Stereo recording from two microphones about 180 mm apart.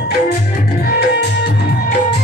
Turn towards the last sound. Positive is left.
turn(degrees=70)  # may be behind; listen again after turning